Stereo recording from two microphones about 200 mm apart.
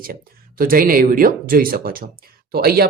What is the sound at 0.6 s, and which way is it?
Speech, 45° right (ahead or behind).